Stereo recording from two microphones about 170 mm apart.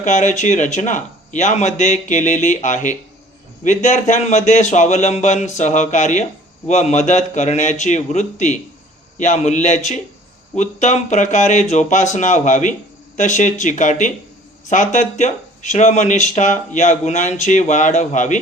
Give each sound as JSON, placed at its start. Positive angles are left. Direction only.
{"t": 0.0, "sound": "speech", "side_deg": 45}